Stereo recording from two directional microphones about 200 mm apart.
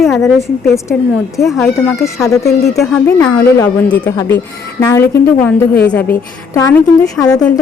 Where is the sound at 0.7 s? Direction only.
15° left (ahead or behind).